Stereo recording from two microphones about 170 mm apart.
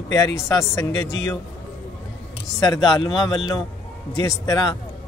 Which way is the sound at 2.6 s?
25° left (ahead or behind).